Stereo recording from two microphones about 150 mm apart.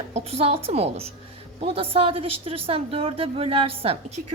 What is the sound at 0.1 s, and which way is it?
A woman's voice, 45° right (ahead or behind).